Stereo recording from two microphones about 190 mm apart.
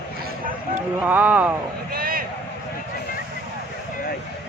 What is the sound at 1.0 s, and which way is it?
Speech, 10° right (ahead or behind).